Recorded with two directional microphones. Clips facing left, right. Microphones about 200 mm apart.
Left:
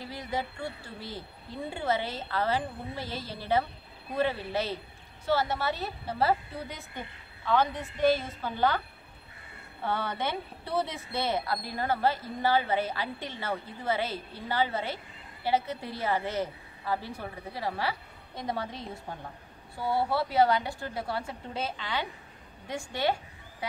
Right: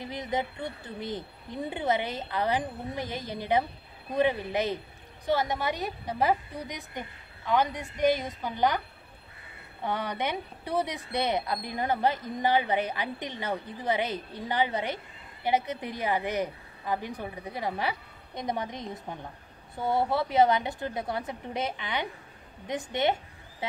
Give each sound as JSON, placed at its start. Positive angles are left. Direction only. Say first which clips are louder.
{"t": 0.0, "sound": "speech", "louder": "right 3 dB", "side_deg": -20}
{"t": 9.8, "sound": "a woman's voice", "louder": "right 1 dB", "side_deg": -15}